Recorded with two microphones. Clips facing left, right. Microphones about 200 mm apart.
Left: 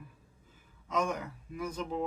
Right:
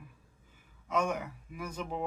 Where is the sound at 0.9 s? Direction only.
10° right (ahead or behind).